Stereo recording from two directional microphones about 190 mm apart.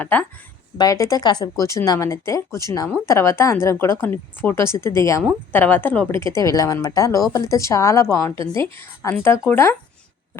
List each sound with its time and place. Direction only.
0.0 s speech: 10° left (ahead or behind)